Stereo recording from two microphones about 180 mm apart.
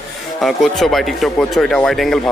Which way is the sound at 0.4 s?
Centre (ahead or behind).